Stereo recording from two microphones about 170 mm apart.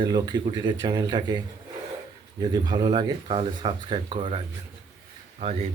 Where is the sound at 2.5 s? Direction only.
25° right (ahead or behind).